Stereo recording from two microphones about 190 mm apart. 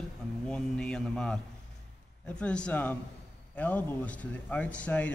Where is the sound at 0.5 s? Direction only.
5° left (ahead or behind).